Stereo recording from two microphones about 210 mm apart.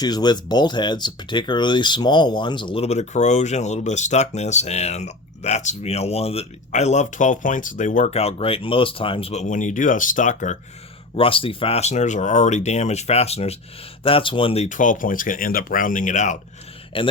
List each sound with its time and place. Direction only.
0.0 s speech: 20° left (ahead or behind); by 10.6 s 35° left (ahead or behind)
11.2 s speech: 25° left (ahead or behind)
16.9 s a man's voice: 25° left (ahead or behind)